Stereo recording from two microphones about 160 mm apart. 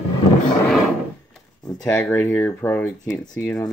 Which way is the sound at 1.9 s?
10° left (ahead or behind).